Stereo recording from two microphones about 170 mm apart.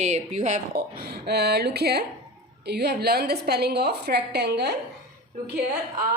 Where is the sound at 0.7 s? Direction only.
65° right (ahead or behind).